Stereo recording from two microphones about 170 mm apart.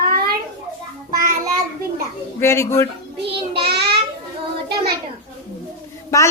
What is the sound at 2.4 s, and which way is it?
Speech, 15° left (ahead or behind).